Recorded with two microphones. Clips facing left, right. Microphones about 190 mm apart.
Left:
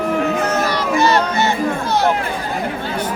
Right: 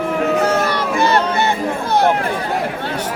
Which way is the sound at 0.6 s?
55° right (ahead or behind).